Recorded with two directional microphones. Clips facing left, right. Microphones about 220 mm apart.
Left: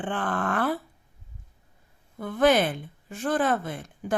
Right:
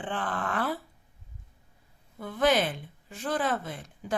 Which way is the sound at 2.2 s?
50° left (ahead or behind).